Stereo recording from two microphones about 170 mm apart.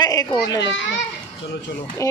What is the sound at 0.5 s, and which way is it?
Speech, 90° left.